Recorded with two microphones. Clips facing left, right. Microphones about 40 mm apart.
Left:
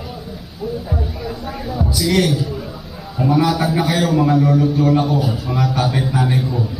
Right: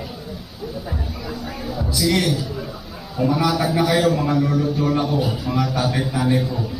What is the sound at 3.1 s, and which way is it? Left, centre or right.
Speech, centre.